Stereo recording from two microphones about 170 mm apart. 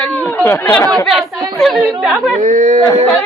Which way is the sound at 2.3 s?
50° right (ahead or behind).